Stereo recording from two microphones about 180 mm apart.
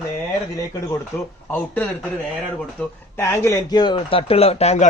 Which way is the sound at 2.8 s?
5° left (ahead or behind).